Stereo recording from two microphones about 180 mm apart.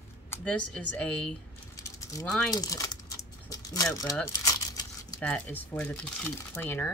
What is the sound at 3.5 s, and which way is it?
Keys jangling, 20° left (ahead or behind).